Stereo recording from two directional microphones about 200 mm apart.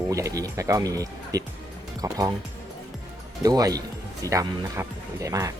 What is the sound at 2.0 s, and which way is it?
Music, 15° right (ahead or behind).